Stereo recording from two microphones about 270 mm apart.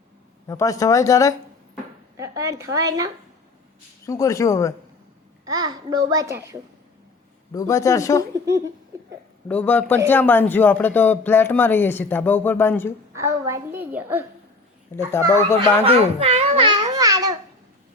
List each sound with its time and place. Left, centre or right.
0.4 s speech: centre
2.1 s a child's voice: centre
4.0 s speech: centre
5.5 s a child's voice: centre
7.5 s speech: centre
9.5 s a man's voice: centre
13.1 s a child's voice: centre
14.9 s speech: centre
15.8 s babbling: right